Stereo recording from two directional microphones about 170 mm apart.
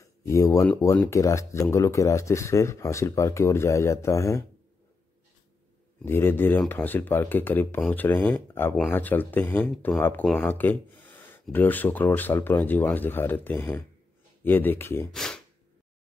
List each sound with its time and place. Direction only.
0.0 s speech: 20° left (ahead or behind)
6.0 s speech: 15° left (ahead or behind)
15.0 s a sound: centre (ahead or behind)